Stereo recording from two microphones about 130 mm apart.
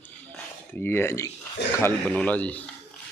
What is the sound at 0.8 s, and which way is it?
Speech, 15° left (ahead or behind).